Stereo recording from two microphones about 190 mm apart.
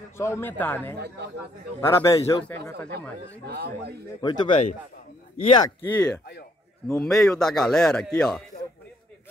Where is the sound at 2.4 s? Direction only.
10° left (ahead or behind).